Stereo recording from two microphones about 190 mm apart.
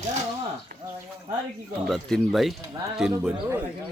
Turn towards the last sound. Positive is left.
turn(degrees=-5)  # may be behind; listen again after turning